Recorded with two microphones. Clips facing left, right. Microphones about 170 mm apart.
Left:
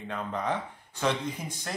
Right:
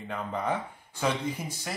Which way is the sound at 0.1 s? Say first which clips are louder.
Right 1 dB; 10° right (ahead or behind).